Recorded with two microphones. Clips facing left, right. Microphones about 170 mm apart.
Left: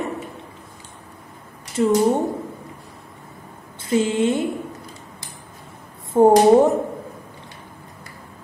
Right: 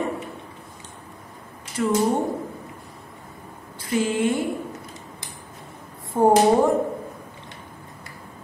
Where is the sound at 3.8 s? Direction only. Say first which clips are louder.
Left 3 dB; 25° left (ahead or behind).